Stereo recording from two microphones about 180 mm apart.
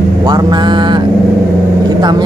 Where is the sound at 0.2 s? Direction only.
25° right (ahead or behind).